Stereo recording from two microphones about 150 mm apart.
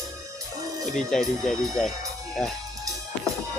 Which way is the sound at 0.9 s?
Centre (ahead or behind).